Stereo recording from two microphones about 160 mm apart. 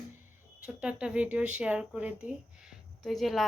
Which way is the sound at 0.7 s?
5° right (ahead or behind).